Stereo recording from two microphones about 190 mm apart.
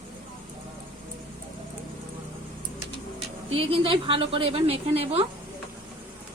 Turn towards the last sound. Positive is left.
turn(degrees=-30)  # may be behind; listen again after turning